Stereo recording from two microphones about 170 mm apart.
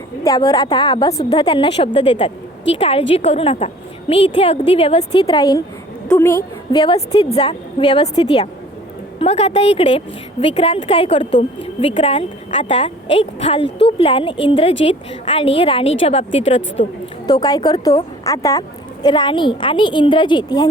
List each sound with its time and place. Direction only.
0.3 s a woman's voice: 25° left (ahead or behind)
5.2 s a woman's voice: 25° left (ahead or behind)
6.7 s a woman's voice: 30° left (ahead or behind)
17.2 s a woman's voice: 20° left (ahead or behind)